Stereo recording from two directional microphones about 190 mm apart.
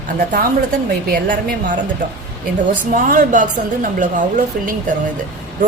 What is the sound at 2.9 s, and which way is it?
A woman's voice, 45° right (ahead or behind).